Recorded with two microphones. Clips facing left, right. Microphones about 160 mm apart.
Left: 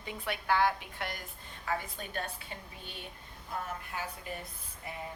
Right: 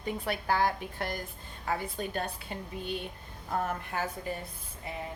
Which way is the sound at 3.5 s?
50° right (ahead or behind).